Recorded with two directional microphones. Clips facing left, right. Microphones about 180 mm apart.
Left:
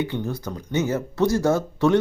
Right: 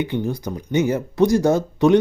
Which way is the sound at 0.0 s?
15° right (ahead or behind).